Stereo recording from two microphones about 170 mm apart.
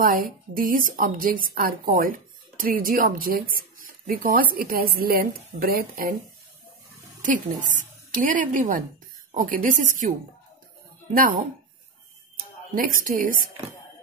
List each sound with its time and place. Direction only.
0.0 s speech: 55° right (ahead or behind)
7.2 s a woman's voice: 50° right (ahead or behind)
12.7 s speech: 55° right (ahead or behind)